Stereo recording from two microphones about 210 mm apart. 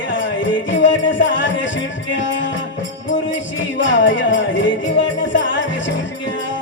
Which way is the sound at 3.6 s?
60° left (ahead or behind).